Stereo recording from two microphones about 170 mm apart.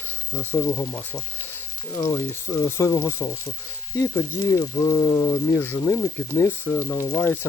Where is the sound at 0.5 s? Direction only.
20° left (ahead or behind).